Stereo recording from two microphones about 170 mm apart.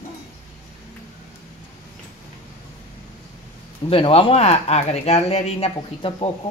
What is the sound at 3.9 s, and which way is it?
Speech, 35° left (ahead or behind).